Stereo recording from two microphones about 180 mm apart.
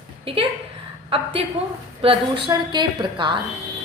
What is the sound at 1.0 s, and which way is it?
A woman's voice, 30° right (ahead or behind).